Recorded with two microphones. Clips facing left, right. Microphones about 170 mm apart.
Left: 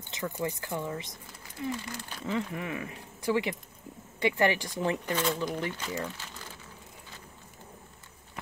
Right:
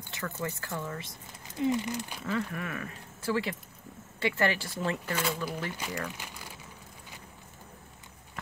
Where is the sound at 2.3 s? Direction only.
20° left (ahead or behind).